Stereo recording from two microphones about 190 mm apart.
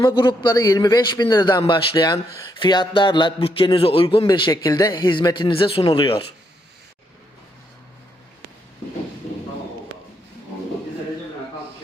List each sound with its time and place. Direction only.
0.0 s a man's voice: 20° left (ahead or behind)